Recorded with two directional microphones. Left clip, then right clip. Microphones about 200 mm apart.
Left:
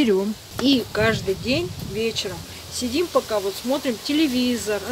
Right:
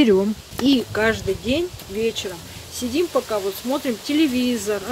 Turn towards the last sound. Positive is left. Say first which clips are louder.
# right 1 dB
turn(degrees=-15)  # may be behind; listen again after turning